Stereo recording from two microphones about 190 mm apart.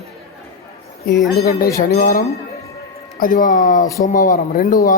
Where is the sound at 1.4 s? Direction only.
50° left (ahead or behind).